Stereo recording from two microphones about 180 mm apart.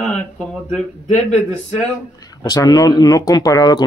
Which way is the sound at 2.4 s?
20° left (ahead or behind).